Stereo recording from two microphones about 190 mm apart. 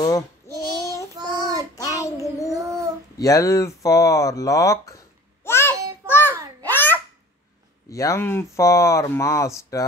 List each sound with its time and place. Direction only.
0.5 s child singing: 20° right (ahead or behind)
1.8 s child singing: 20° left (ahead or behind)
2.5 s child singing: 15° right (ahead or behind)
3.2 s speech: 15° left (ahead or behind)
5.4 s a sound: 10° left (ahead or behind)
6.7 s babbling: 10° left (ahead or behind)
7.9 s speech: 15° left (ahead or behind)